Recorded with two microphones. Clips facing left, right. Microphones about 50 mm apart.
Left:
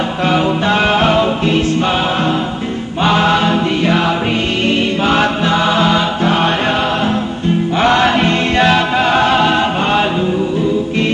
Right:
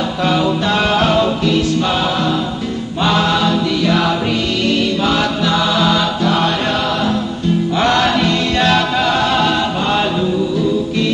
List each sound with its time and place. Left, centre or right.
0.2 s music: left
3.0 s chant: left
5.0 s music: left
7.8 s music: left